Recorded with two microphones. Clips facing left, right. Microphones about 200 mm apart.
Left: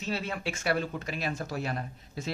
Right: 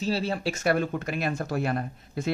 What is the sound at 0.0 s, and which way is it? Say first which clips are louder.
Speech: right 6 dB; 30° right (ahead or behind).